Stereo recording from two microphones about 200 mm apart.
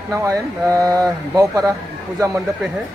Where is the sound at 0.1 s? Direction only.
15° right (ahead or behind).